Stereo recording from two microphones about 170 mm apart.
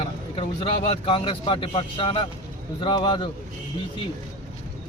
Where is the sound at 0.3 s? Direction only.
35° left (ahead or behind).